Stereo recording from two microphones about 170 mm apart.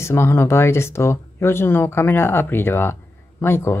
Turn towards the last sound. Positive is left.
turn(degrees=15)  # may be behind; listen again after turning